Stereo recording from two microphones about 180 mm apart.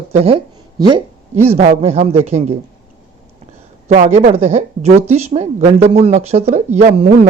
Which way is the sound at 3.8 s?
40° right (ahead or behind).